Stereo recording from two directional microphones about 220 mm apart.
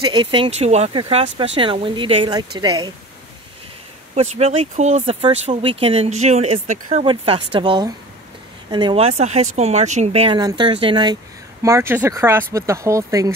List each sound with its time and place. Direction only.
0.0 s speech: 20° right (ahead or behind)
4.1 s speech: 30° right (ahead or behind); by 13.3 s 15° right (ahead or behind)